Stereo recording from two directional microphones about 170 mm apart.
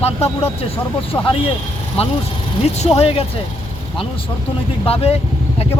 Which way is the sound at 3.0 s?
35° left (ahead or behind).